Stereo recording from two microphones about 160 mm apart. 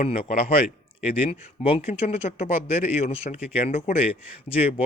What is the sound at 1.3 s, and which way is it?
Speech, 40° left (ahead or behind).